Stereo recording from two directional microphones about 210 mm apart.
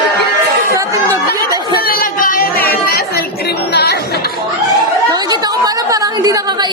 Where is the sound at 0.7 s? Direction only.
15° right (ahead or behind).